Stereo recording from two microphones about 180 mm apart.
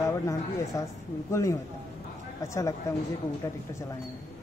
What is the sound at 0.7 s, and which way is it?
A man's voice, 15° left (ahead or behind).